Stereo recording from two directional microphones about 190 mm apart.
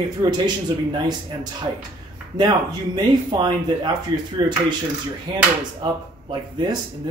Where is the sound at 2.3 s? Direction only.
20° right (ahead or behind).